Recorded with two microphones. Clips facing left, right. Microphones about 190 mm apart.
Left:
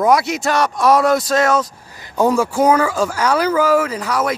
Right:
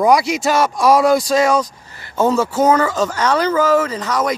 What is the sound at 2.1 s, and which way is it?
Speech, 15° left (ahead or behind).